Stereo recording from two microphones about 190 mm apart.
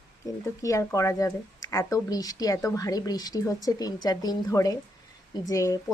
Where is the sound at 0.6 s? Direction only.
15° left (ahead or behind).